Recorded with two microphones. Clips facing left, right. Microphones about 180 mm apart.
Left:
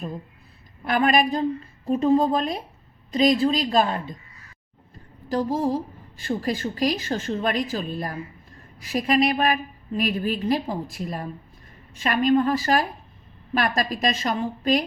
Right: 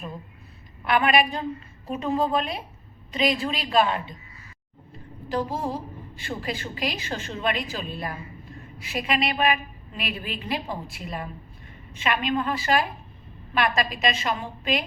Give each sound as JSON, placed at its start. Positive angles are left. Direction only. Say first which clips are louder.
{"t": 0.9, "sound": "a woman's voice", "louder": "left 1 dB", "side_deg": 40}
{"t": 6.2, "sound": "a woman's voice", "louder": "left 6 dB", "side_deg": 40}